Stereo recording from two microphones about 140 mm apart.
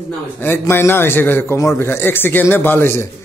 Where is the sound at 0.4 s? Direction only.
15° left (ahead or behind).